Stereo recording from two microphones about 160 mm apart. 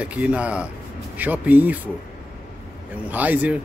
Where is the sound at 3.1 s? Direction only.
10° right (ahead or behind).